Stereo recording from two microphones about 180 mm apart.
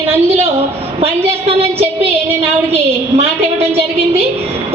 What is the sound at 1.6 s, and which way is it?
A woman's voice, 35° right (ahead or behind).